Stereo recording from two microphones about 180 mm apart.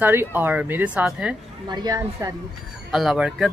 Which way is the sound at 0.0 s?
10° right (ahead or behind).